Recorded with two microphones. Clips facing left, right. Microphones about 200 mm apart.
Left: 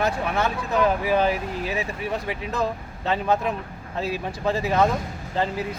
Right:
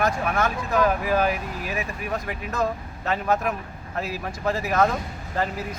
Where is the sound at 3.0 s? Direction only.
25° left (ahead or behind).